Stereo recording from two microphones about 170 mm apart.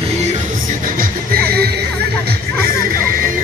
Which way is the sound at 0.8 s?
55° right (ahead or behind).